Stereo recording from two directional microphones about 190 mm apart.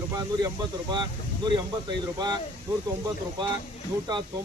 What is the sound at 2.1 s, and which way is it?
Speech, 20° right (ahead or behind).